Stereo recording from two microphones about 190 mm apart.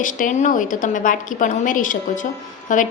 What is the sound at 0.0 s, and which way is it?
A woman's voice, 40° left (ahead or behind).